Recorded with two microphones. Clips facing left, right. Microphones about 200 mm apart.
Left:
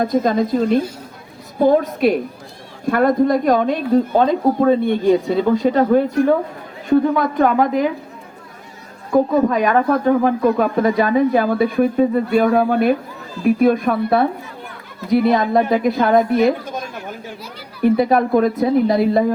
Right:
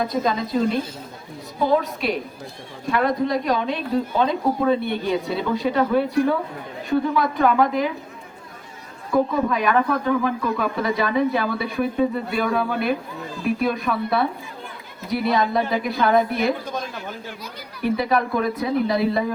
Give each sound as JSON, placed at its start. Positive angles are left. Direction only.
{"t": 0.0, "sound": "speech", "side_deg": 50}
{"t": 9.3, "sound": "speech", "side_deg": 40}
{"t": 17.9, "sound": "speech", "side_deg": 45}